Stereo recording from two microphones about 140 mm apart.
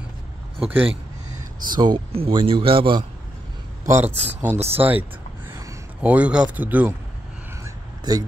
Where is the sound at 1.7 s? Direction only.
35° right (ahead or behind).